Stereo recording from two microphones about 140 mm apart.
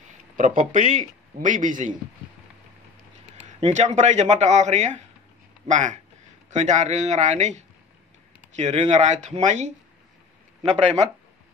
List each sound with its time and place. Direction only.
0.6 s speech: 65° right (ahead or behind)
3.4 s speech: 60° right (ahead or behind)